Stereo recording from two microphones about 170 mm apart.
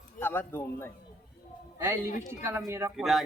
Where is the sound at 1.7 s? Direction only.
15° right (ahead or behind).